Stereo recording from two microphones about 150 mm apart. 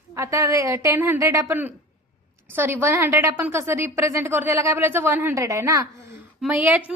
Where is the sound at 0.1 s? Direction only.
20° right (ahead or behind).